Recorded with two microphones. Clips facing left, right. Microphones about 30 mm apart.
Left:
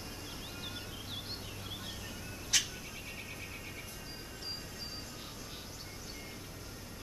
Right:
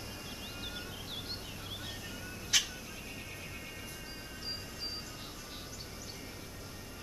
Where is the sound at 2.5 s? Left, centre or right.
Centre.